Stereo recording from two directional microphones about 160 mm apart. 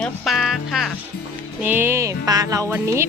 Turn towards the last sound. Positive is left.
turn(degrees=-15)  # may be behind; listen again after turning